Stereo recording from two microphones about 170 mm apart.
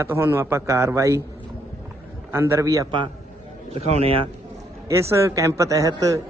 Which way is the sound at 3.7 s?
40° right (ahead or behind).